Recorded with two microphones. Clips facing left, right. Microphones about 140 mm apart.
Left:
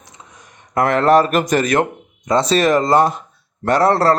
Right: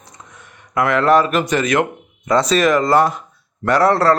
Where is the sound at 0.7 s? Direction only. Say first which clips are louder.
Left 1 dB; 40° left (ahead or behind).